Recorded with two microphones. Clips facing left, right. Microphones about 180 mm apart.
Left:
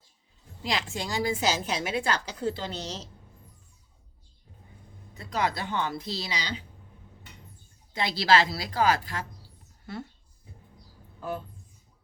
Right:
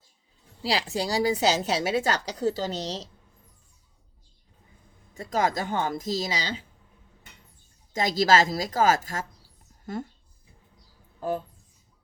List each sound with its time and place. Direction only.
0.6 s a woman's voice: 35° right (ahead or behind)
5.1 s a woman's voice: 45° right (ahead or behind)
7.9 s a woman's voice: 45° right (ahead or behind)
11.2 s speech: 40° right (ahead or behind)